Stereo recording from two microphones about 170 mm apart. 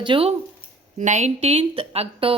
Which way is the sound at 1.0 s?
45° right (ahead or behind).